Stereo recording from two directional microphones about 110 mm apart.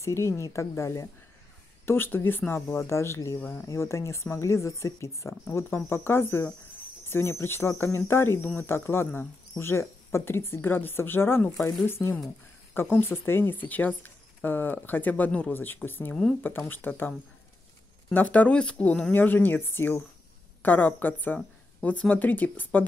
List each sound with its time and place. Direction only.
0.0 s speech: 25° left (ahead or behind)
18.1 s speech: 15° left (ahead or behind)